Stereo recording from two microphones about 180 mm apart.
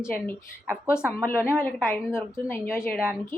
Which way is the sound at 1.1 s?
10° left (ahead or behind).